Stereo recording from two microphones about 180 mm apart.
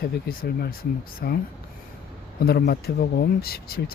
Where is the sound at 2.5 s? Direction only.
60° left (ahead or behind).